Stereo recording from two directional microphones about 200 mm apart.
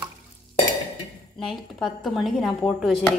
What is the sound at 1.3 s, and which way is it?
Speech, centre (ahead or behind).